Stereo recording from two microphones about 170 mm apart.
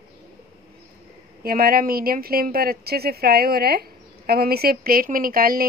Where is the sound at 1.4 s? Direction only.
60° right (ahead or behind).